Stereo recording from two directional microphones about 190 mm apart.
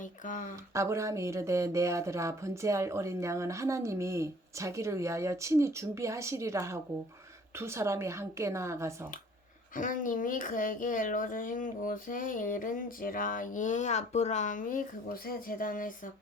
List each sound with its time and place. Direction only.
0.3 s speech: 45° left (ahead or behind)
0.7 s speech: 15° right (ahead or behind)
9.7 s speech: 45° left (ahead or behind)